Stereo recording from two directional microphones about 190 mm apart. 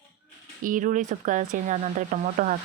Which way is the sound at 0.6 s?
45° right (ahead or behind).